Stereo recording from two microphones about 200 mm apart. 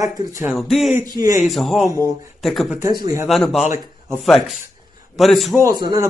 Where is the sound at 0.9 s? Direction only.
20° right (ahead or behind).